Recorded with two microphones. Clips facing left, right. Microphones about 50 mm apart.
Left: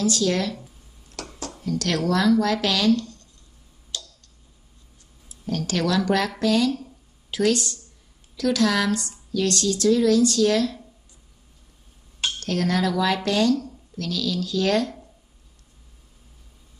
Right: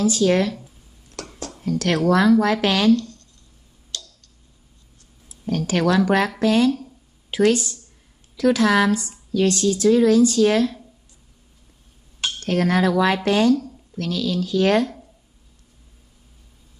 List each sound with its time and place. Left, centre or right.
0.2 s speech: right
1.1 s a sound: centre
1.6 s speech: right
3.9 s clicking: centre
5.5 s speech: right
12.4 s speech: right